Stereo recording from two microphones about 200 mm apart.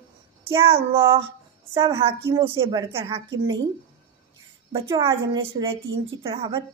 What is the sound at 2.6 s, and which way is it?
Speech, 20° right (ahead or behind).